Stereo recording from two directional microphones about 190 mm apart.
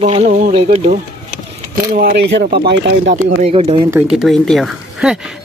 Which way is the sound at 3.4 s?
30° right (ahead or behind).